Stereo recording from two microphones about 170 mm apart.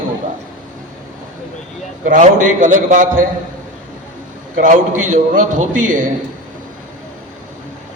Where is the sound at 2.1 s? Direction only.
50° right (ahead or behind).